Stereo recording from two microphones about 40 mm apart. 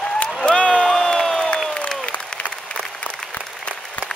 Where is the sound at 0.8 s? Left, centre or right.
Centre.